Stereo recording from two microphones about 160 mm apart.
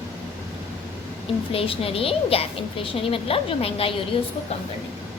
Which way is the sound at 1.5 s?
35° left (ahead or behind).